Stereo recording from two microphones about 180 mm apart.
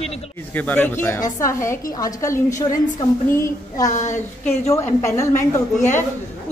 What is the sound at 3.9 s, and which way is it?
Speech, 40° left (ahead or behind).